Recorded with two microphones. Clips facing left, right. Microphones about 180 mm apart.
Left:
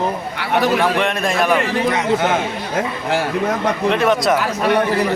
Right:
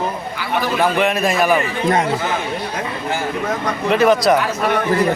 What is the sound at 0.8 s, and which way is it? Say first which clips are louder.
Speech: right 1 dB; 5° right (ahead or behind).